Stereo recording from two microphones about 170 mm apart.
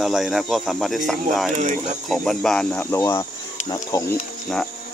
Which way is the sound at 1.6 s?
45° right (ahead or behind).